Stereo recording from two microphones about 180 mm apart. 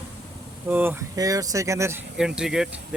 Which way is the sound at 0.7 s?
10° right (ahead or behind).